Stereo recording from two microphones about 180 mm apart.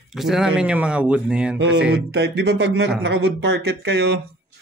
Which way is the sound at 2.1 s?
65° right (ahead or behind).